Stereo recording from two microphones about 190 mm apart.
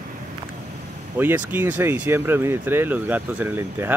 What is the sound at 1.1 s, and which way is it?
Speech, 10° right (ahead or behind).